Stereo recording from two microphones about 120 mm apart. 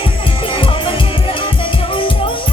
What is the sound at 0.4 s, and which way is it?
Music, 45° left (ahead or behind).